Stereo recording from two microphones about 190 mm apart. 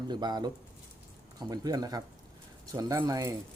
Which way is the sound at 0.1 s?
20° right (ahead or behind).